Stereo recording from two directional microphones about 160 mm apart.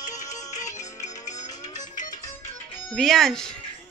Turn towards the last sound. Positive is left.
turn(degrees=5)  # may be behind; listen again after turning